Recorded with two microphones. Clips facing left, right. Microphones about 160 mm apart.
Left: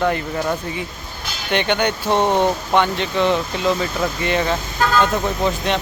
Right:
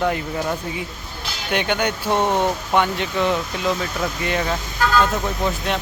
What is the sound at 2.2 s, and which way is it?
Speech, 30° left (ahead or behind).